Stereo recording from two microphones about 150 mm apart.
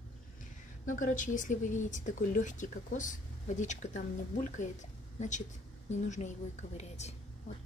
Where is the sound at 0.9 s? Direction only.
60° left (ahead or behind).